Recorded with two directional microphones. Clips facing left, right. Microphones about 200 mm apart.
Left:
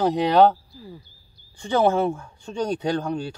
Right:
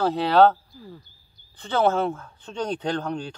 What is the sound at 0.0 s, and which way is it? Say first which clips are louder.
Speech: left 1 dB; 15° left (ahead or behind).